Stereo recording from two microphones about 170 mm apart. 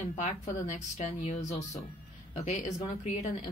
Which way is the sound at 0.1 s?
45° left (ahead or behind).